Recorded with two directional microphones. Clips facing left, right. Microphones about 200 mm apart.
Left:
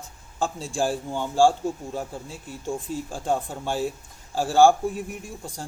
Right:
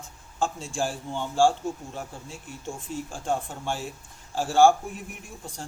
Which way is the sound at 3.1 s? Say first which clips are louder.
Left 3 dB; 35° left (ahead or behind).